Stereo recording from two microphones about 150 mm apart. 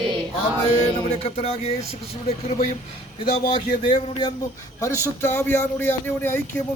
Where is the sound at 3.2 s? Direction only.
30° left (ahead or behind).